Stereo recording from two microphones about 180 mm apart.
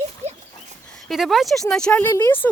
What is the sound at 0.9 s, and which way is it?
Speech, centre (ahead or behind).